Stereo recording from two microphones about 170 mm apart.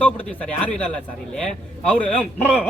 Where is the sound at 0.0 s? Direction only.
10° left (ahead or behind).